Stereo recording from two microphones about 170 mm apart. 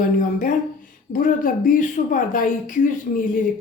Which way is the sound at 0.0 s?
50° left (ahead or behind).